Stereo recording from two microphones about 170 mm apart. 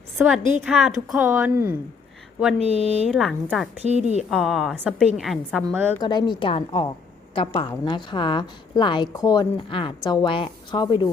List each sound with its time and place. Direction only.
0.3 s a woman's voice: 5° right (ahead or behind)
2.6 s speech: 40° right (ahead or behind)
3.1 s a woman's voice: centre (ahead or behind)
3.8 s speech: 40° right (ahead or behind)
4.3 s a woman's voice: centre (ahead or behind)
6.0 s a woman's voice: 25° left (ahead or behind)